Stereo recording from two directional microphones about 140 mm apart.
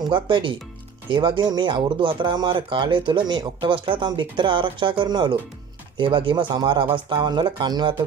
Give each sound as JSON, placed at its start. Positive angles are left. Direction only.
{"t": 0.0, "sound": "speech", "side_deg": -35}